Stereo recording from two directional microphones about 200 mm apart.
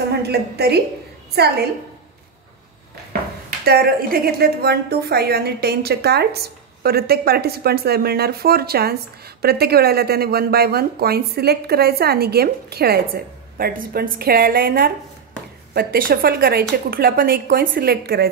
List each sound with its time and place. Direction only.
0.2 s speech: 55° right (ahead or behind)
3.1 s speech: 50° right (ahead or behind)